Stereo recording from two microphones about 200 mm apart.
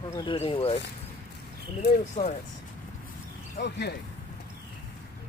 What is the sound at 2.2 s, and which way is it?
Speech, 20° left (ahead or behind).